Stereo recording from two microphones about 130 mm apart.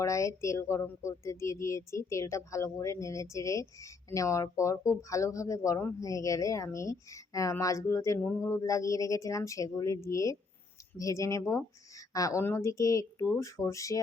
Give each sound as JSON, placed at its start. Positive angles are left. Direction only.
{"t": 0.0, "sound": "speech", "side_deg": 25}